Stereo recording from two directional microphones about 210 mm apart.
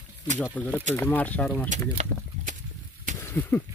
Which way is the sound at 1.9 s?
35° right (ahead or behind).